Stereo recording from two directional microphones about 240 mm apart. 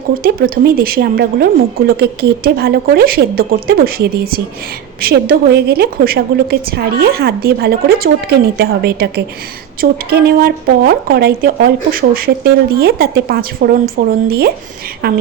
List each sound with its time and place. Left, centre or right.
0.1 s speech: right